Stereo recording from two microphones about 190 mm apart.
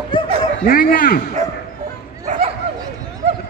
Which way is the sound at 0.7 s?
50° left (ahead or behind).